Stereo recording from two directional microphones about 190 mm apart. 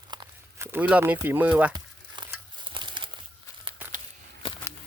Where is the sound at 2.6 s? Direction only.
25° right (ahead or behind).